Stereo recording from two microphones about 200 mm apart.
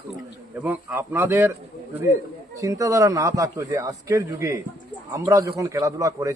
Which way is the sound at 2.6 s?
15° right (ahead or behind).